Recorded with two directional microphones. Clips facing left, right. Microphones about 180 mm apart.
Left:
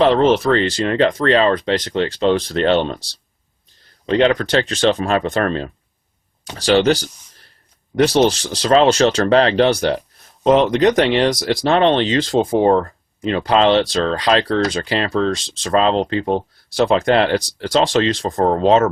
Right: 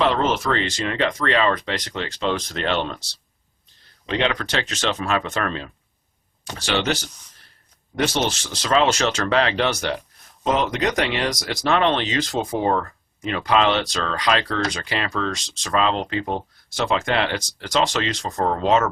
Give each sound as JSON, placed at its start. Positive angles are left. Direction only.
{"t": 0.0, "sound": "speech", "side_deg": 35}